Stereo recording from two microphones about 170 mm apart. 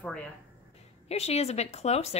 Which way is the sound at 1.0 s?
40° left (ahead or behind).